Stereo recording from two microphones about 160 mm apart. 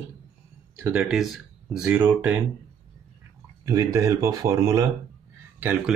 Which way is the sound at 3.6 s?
20° right (ahead or behind).